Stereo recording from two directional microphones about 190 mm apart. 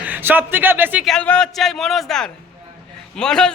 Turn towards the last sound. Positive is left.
turn(degrees=5)  # may be behind; listen again after turning